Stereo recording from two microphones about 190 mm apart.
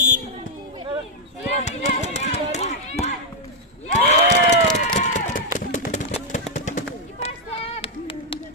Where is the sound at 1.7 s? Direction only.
35° left (ahead or behind).